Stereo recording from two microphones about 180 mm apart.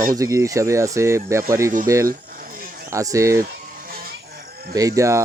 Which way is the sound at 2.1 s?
50° right (ahead or behind).